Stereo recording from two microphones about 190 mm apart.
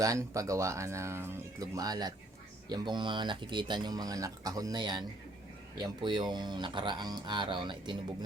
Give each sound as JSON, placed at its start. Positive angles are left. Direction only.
{"t": 0.0, "sound": "speech", "side_deg": -15}